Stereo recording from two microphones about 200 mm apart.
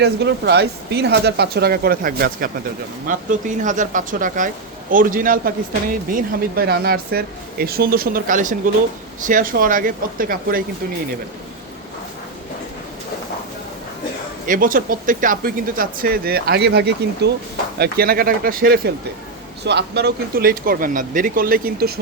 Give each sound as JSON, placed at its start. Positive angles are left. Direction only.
{"t": 0.0, "sound": "speech", "side_deg": -55}
{"t": 14.4, "sound": "speech", "side_deg": -45}
{"t": 19.6, "sound": "speech", "side_deg": -55}